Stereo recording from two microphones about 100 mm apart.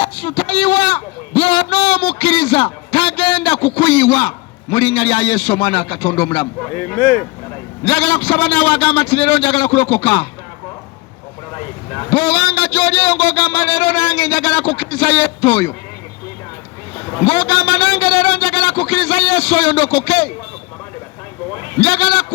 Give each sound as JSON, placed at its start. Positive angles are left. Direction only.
{"t": 0.0, "sound": "a sound", "side_deg": 70}
{"t": 6.7, "sound": "speech", "side_deg": 25}
{"t": 7.9, "sound": "a man's voice", "side_deg": 65}
{"t": 12.1, "sound": "a man's voice", "side_deg": 65}
{"t": 17.2, "sound": "a man's voice", "side_deg": 65}
{"t": 21.8, "sound": "a man's voice", "side_deg": 65}